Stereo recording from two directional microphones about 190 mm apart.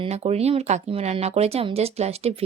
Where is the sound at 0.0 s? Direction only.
35° right (ahead or behind).